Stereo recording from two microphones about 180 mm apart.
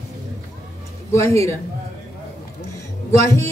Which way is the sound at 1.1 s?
15° left (ahead or behind).